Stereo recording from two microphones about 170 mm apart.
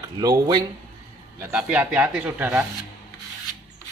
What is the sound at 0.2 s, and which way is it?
Speech, 20° right (ahead or behind).